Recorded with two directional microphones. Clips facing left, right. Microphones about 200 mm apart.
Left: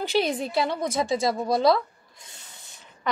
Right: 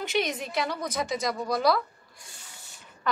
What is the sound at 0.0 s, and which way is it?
A woman's voice, 30° left (ahead or behind).